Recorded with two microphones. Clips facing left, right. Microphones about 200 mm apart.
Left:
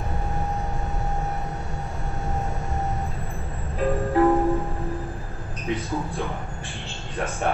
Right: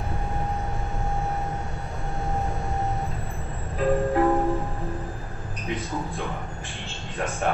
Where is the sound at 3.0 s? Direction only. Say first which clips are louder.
Even; centre (ahead or behind).